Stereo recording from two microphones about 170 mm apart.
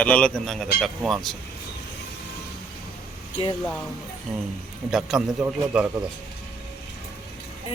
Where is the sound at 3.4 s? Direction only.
35° left (ahead or behind).